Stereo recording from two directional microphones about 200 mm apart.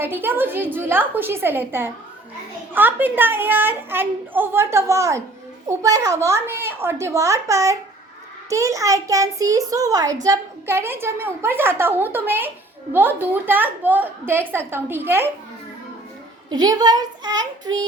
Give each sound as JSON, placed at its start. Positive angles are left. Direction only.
{"t": 0.0, "sound": "a woman's voice", "side_deg": -10}
{"t": 16.5, "sound": "a child's voice", "side_deg": -20}